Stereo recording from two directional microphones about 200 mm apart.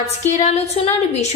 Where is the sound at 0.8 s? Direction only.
30° left (ahead or behind).